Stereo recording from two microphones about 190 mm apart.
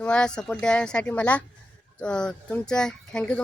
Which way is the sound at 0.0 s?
5° left (ahead or behind).